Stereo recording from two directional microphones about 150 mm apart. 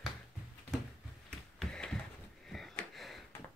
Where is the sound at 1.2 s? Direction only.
5° left (ahead or behind).